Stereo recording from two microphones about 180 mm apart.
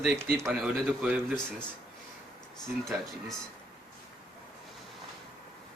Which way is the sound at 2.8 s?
Centre (ahead or behind).